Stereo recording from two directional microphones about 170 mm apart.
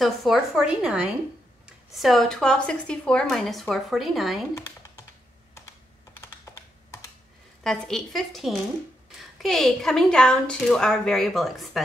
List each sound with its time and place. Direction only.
0.0 s speech: centre (ahead or behind)
6.2 s computer keyboard: 15° left (ahead or behind)
7.6 s speech: 5° left (ahead or behind)